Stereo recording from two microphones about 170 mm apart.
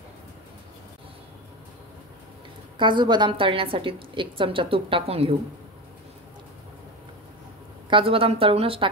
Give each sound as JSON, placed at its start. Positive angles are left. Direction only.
{"t": 2.8, "sound": "a woman's voice", "side_deg": -25}
{"t": 7.9, "sound": "a woman's voice", "side_deg": -35}